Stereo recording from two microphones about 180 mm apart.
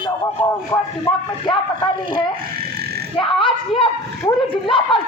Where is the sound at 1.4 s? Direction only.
25° left (ahead or behind).